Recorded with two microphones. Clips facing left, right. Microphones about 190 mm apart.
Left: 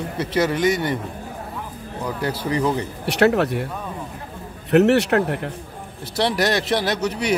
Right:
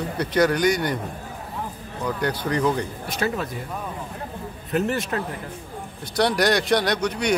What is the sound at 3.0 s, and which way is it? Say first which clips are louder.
Speech: left 9 dB; 70° left (ahead or behind).